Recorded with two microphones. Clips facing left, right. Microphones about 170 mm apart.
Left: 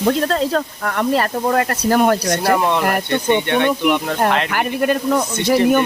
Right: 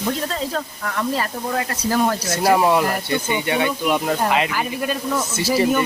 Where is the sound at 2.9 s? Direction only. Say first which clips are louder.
Left 5 dB; 65° left (ahead or behind).